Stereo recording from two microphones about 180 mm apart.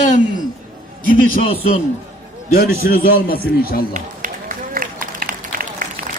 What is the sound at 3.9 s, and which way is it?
Run, 45° right (ahead or behind).